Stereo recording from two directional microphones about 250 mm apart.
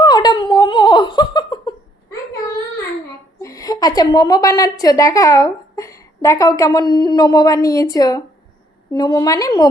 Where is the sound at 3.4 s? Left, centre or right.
Centre.